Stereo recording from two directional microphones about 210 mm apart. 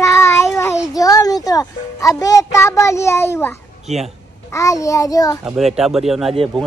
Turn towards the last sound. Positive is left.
turn(degrees=0)  # may be behind; listen again after turning